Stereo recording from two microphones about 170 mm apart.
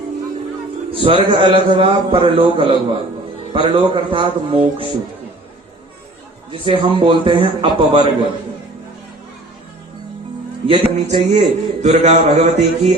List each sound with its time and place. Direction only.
0.9 s a man's voice: 30° right (ahead or behind)
6.5 s a man's voice: 30° right (ahead or behind)
10.7 s a man's voice: 35° right (ahead or behind)